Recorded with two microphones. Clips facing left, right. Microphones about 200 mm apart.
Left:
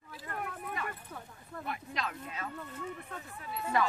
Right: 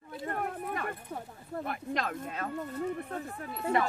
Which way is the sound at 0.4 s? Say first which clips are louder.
Right 2 dB; 50° right (ahead or behind).